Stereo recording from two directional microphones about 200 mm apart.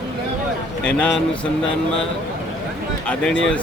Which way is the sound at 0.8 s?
5° left (ahead or behind).